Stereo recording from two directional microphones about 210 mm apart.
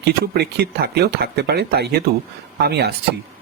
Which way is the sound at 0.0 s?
50° right (ahead or behind).